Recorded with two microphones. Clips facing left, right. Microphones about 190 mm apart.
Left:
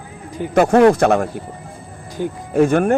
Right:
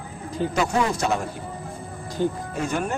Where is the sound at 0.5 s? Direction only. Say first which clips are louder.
Left 13 dB; 60° left (ahead or behind).